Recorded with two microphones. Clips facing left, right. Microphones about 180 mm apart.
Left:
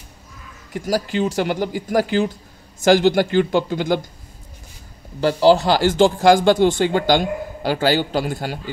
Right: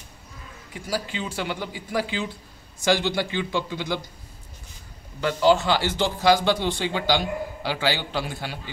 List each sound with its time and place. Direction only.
0.7 s speech: 45° left (ahead or behind)
5.2 s speech: 35° left (ahead or behind)